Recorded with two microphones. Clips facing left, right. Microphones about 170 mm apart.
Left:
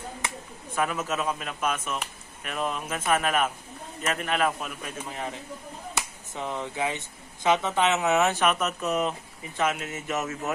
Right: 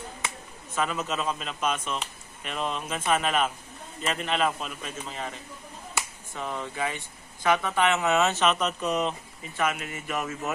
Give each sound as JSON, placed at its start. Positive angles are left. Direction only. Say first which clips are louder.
{"t": 0.7, "sound": "speech", "louder": "left 1 dB", "side_deg": 10}
{"t": 9.9, "sound": "speech", "louder": "left 2 dB", "side_deg": 20}